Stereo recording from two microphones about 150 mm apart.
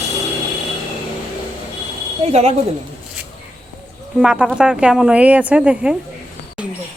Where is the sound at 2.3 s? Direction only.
45° right (ahead or behind).